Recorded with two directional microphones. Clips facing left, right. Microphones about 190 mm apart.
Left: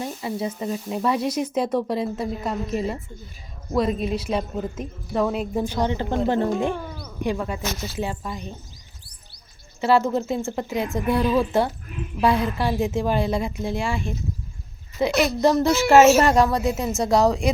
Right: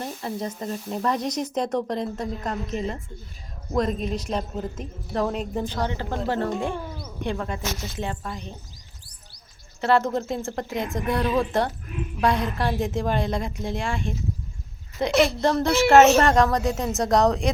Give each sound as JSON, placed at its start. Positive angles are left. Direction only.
{"t": 0.0, "sound": "a woman's voice", "side_deg": 5}
{"t": 6.7, "sound": "speech", "side_deg": 0}
{"t": 7.2, "sound": "speech", "side_deg": 10}
{"t": 9.8, "sound": "a woman's voice", "side_deg": 5}